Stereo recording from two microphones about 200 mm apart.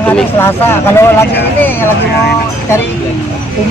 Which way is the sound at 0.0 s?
10° left (ahead or behind).